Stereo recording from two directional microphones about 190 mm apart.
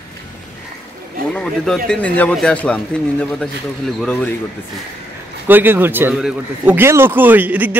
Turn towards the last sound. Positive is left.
turn(degrees=-10)  # may be behind; listen again after turning